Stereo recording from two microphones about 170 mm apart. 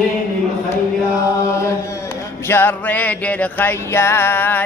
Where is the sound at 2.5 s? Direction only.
10° left (ahead or behind).